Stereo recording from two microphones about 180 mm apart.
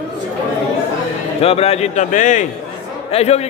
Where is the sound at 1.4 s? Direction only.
35° left (ahead or behind).